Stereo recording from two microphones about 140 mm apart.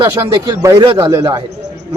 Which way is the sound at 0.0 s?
25° right (ahead or behind).